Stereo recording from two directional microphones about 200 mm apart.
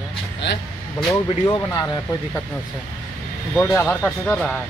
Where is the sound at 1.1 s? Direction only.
15° left (ahead or behind).